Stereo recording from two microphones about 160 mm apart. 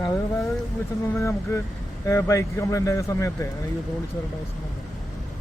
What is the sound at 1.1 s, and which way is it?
A man's voice, 15° left (ahead or behind).